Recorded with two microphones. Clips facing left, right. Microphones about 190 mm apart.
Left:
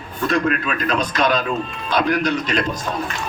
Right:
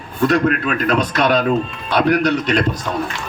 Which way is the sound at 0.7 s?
60° right (ahead or behind).